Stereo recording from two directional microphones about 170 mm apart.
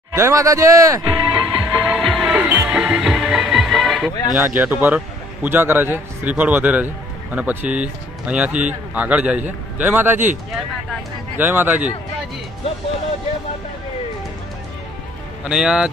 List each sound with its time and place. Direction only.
0.1 s a man's voice: 20° right (ahead or behind)
1.8 s music: centre (ahead or behind)
4.6 s a man's voice: 10° right (ahead or behind)
11.3 s a man's voice: 10° right (ahead or behind)
15.4 s speech: 5° right (ahead or behind)